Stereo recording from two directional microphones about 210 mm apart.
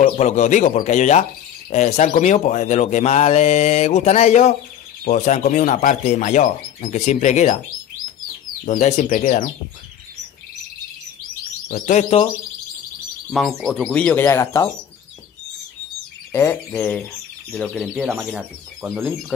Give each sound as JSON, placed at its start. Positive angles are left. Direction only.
{"t": 0.0, "sound": "speech", "side_deg": 35}
{"t": 8.6, "sound": "speech", "side_deg": 35}
{"t": 11.6, "sound": "speech", "side_deg": 40}
{"t": 13.3, "sound": "speech", "side_deg": 0}
{"t": 16.3, "sound": "speech", "side_deg": 10}